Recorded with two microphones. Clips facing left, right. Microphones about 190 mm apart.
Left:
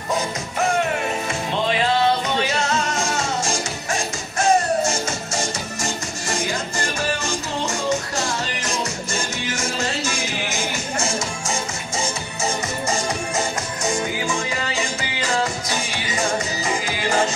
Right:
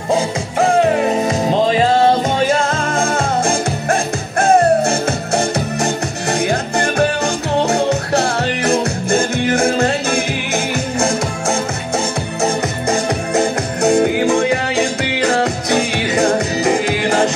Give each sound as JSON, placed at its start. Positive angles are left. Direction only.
{"t": 0.1, "sound": "music", "side_deg": -30}